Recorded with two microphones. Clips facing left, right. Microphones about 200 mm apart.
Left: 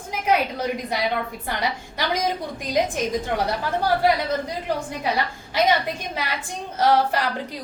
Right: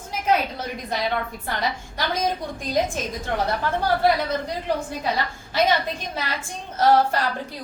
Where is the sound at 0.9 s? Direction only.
10° left (ahead or behind).